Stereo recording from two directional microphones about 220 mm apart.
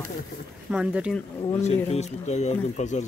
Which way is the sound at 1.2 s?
10° left (ahead or behind).